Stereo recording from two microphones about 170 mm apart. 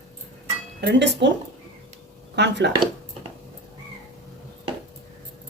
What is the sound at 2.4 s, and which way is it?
Speech, 90° right.